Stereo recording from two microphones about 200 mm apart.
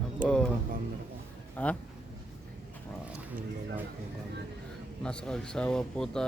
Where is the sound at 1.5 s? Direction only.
5° left (ahead or behind).